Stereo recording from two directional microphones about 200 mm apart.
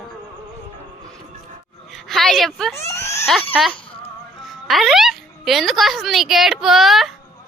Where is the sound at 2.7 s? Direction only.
15° left (ahead or behind).